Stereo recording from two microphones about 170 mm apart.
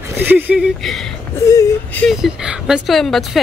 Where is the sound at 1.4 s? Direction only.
20° left (ahead or behind).